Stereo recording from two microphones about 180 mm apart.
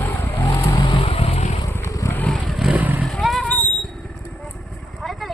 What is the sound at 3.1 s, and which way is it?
Vehicle, centre (ahead or behind).